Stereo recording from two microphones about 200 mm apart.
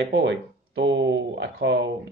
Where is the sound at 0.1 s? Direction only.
60° right (ahead or behind).